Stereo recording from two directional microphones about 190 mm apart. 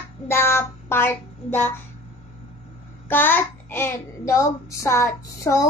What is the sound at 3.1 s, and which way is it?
Child singing, 10° left (ahead or behind).